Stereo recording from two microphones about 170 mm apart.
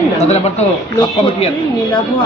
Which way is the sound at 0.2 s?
40° left (ahead or behind).